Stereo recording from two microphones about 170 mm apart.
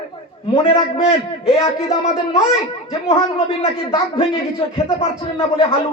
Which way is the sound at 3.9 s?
30° left (ahead or behind).